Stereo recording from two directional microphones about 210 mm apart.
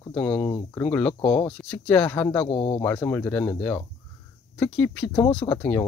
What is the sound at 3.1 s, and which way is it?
Speech, 5° left (ahead or behind).